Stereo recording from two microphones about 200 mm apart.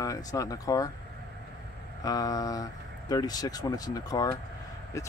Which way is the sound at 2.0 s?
20° left (ahead or behind).